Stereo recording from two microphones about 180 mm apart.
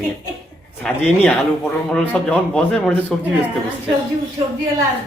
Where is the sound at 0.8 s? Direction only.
5° left (ahead or behind).